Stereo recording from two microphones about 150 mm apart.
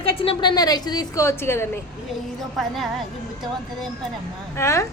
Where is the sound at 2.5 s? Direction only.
Centre (ahead or behind).